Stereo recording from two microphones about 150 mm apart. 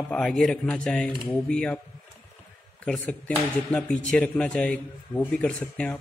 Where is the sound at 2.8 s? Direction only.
10° left (ahead or behind).